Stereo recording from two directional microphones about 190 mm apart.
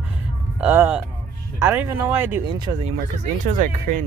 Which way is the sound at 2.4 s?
25° right (ahead or behind).